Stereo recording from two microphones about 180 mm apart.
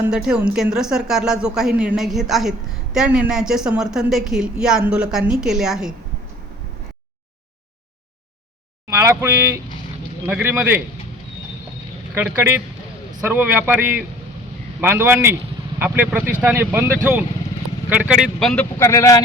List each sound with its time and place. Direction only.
0.0 s speech: 5° right (ahead or behind)
8.9 s speech: 15° right (ahead or behind)
12.1 s speech: 10° right (ahead or behind)
18.8 s speech: 15° left (ahead or behind)